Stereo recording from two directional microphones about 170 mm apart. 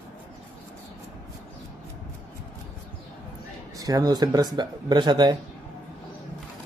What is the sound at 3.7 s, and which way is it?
A man's voice, 20° right (ahead or behind).